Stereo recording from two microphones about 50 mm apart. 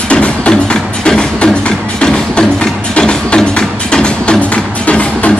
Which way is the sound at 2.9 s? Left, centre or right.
Centre.